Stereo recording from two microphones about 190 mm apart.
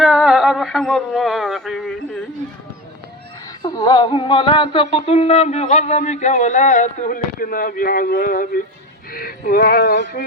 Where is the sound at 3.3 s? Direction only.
15° left (ahead or behind).